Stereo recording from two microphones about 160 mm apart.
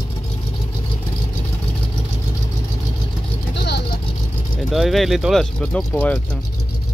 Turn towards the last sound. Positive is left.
turn(degrees=10)  # may be behind; listen again after turning